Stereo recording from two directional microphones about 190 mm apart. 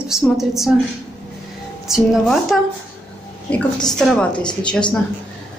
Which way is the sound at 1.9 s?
Centre (ahead or behind).